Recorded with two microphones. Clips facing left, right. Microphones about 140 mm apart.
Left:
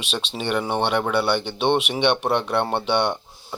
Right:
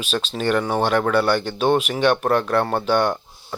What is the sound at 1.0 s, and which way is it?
Speech, 5° left (ahead or behind).